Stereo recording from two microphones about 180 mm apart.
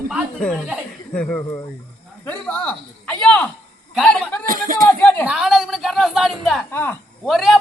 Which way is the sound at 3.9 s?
Centre (ahead or behind).